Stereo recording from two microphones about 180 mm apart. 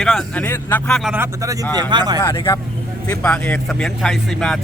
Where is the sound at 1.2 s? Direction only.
20° right (ahead or behind).